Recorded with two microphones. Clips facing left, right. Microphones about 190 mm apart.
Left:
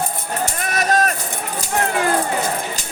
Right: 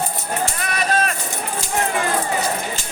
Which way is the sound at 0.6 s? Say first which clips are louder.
Left 5 dB; 45° left (ahead or behind).